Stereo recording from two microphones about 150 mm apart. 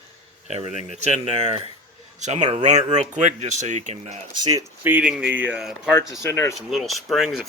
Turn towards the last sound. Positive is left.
turn(degrees=0)  # may be behind; listen again after turning